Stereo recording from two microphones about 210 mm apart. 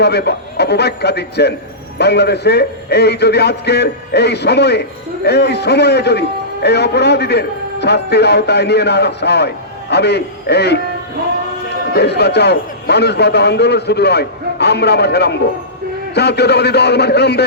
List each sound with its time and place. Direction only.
0.0 s a man's voice: 50° left (ahead or behind)
11.9 s a man's voice: 50° left (ahead or behind)